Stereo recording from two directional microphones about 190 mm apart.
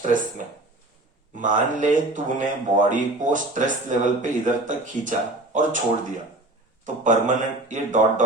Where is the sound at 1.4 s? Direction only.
40° right (ahead or behind).